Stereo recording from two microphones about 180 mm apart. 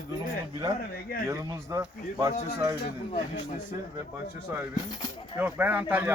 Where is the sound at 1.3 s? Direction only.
20° right (ahead or behind).